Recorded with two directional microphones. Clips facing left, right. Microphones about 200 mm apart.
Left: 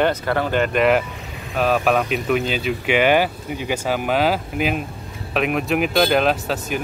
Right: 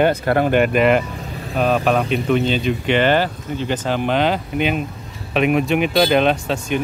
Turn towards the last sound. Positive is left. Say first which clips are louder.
# right 2 dB
turn(degrees=5)  # may be behind; listen again after turning